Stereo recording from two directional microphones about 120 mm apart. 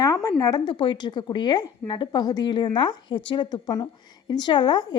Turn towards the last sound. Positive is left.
turn(degrees=35)  # may be behind; listen again after turning